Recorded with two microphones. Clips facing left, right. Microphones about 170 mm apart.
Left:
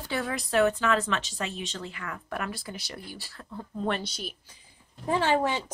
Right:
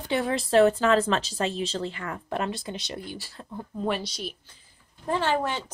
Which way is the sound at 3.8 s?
Centre (ahead or behind).